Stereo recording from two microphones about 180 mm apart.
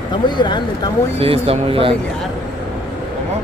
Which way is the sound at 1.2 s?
30° right (ahead or behind).